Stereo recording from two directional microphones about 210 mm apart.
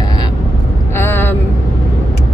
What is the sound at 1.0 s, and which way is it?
Speech, 10° left (ahead or behind).